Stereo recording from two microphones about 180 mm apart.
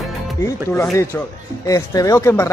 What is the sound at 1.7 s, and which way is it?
Speech, 20° left (ahead or behind).